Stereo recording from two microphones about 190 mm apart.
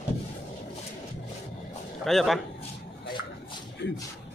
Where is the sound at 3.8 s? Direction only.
65° left (ahead or behind).